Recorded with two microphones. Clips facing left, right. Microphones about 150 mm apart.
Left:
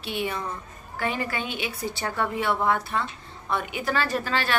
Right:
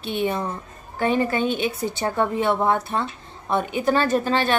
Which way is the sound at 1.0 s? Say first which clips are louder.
Right 8 dB; 25° right (ahead or behind).